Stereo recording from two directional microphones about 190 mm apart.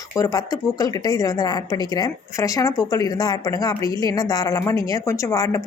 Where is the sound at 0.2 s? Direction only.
20° left (ahead or behind).